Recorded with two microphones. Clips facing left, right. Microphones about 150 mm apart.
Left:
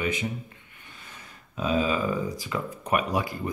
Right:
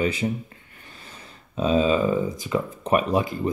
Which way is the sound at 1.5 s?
25° right (ahead or behind).